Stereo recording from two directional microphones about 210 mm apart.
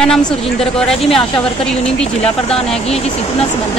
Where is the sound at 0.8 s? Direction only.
Centre (ahead or behind).